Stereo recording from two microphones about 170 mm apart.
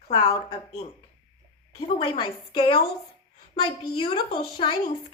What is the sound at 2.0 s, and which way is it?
A woman's voice, 25° left (ahead or behind).